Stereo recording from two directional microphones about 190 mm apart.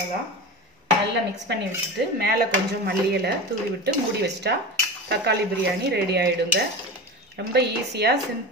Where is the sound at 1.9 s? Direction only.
55° right (ahead or behind).